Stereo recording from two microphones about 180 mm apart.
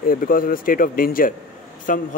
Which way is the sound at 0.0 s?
50° left (ahead or behind).